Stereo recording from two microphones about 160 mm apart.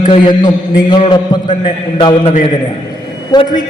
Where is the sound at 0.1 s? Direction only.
30° left (ahead or behind).